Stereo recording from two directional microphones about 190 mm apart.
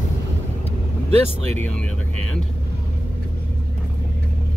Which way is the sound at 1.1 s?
35° right (ahead or behind).